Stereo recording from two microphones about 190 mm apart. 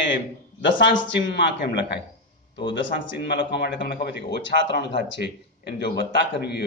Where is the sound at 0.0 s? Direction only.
70° left (ahead or behind).